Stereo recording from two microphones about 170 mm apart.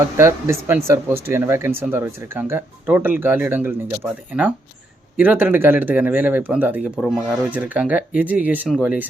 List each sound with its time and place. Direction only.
0.2 s speech: 15° right (ahead or behind)